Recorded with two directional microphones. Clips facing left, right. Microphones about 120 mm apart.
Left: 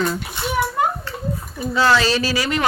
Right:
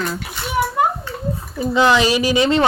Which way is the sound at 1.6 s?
20° right (ahead or behind).